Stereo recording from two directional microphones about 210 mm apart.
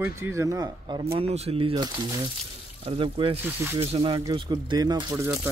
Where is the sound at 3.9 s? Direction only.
25° right (ahead or behind).